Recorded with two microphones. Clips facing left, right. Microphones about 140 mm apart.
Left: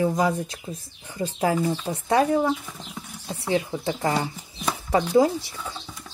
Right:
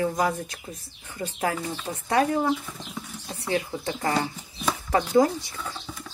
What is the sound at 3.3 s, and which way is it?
Speech, 25° left (ahead or behind).